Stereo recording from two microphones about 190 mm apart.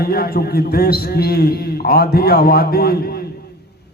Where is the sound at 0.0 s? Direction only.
50° left (ahead or behind).